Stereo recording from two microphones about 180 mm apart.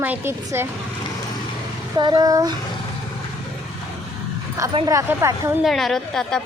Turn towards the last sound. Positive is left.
turn(degrees=0)  # may be behind; listen again after turning